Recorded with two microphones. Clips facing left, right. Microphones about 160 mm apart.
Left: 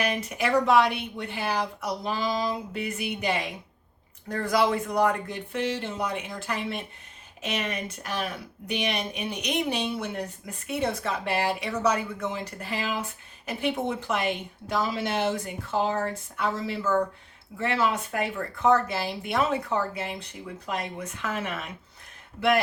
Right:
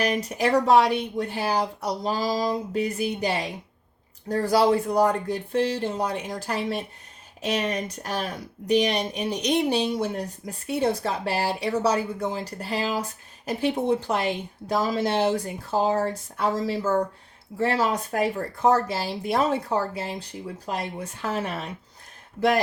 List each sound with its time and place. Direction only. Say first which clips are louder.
0.0 s speech: right 4 dB; 35° right (ahead or behind)